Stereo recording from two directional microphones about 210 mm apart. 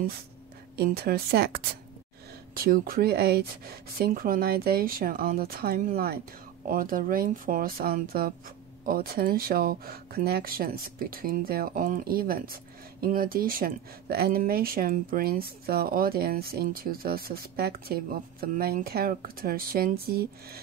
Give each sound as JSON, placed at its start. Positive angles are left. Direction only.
{"t": 0.7, "sound": "speech", "side_deg": -45}